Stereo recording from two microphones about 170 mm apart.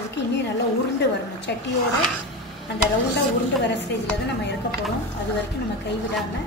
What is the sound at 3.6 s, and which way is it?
Speech, 90° left.